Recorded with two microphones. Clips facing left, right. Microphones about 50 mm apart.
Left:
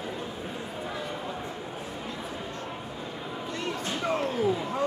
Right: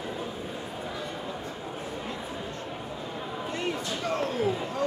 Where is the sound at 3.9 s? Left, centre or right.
Left.